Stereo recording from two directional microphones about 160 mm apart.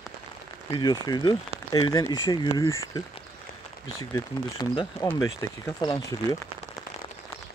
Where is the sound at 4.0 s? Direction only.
25° left (ahead or behind).